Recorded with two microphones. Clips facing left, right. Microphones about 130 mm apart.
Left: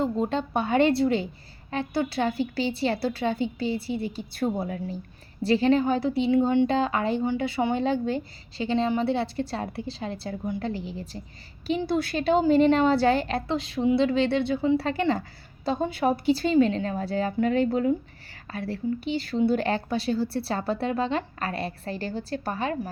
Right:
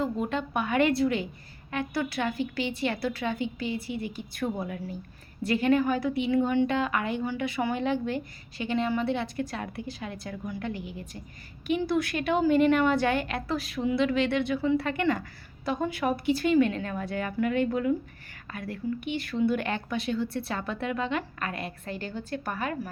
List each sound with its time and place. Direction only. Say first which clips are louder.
0.0 s a woman's voice: left 3 dB; 30° left (ahead or behind)